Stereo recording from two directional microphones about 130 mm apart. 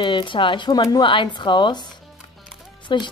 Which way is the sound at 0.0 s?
35° left (ahead or behind).